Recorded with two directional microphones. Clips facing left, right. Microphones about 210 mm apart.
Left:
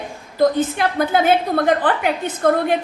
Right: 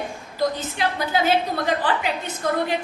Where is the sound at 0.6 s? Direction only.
55° left (ahead or behind).